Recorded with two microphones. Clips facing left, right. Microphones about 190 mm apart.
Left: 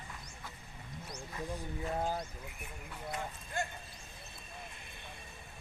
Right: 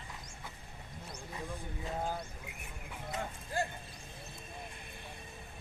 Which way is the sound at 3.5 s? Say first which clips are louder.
Right 3 dB; 35° right (ahead or behind).